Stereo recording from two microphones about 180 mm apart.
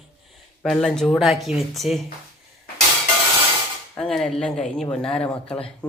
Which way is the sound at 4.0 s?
5° left (ahead or behind).